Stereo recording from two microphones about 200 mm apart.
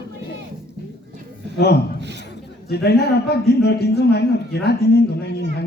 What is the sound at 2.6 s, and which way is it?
A man's voice, 55° left (ahead or behind).